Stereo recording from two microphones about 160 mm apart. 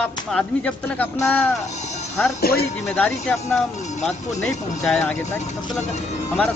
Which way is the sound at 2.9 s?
10° left (ahead or behind).